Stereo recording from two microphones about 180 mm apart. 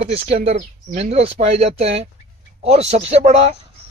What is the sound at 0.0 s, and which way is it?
Speech, 35° right (ahead or behind).